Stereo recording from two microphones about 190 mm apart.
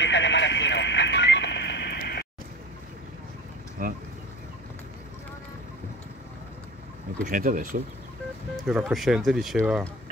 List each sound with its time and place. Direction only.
0.0 s radio: 70° left (ahead or behind)
3.8 s speech: 45° right (ahead or behind)
7.2 s speech: 45° right (ahead or behind)
8.6 s speech: 5° right (ahead or behind)